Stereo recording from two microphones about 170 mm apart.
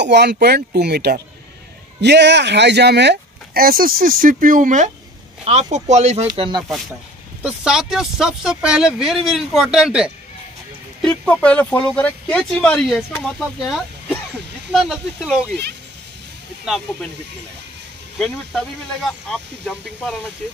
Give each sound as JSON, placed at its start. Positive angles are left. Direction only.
{"t": 0.0, "sound": "speech", "side_deg": -85}
{"t": 2.0, "sound": "speech", "side_deg": -90}
{"t": 6.2, "sound": "speech", "side_deg": -30}
{"t": 7.4, "sound": "speech", "side_deg": -5}
{"t": 16.6, "sound": "speech", "side_deg": 0}
{"t": 18.2, "sound": "speech", "side_deg": 0}